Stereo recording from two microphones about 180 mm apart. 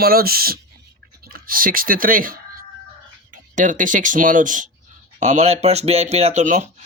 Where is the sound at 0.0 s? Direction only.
55° right (ahead or behind).